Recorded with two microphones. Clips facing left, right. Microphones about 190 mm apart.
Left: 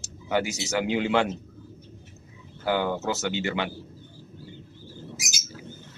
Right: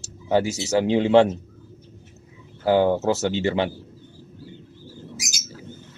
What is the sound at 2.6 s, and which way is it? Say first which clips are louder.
Speech: right 7 dB; 35° right (ahead or behind).